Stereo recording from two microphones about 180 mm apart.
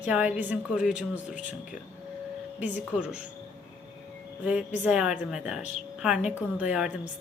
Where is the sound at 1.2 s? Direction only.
45° left (ahead or behind).